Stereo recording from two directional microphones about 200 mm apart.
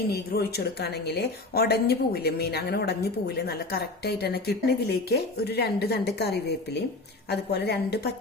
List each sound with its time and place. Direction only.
0.1 s a woman's voice: 55° left (ahead or behind)